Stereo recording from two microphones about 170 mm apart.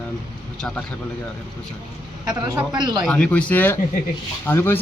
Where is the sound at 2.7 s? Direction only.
25° right (ahead or behind).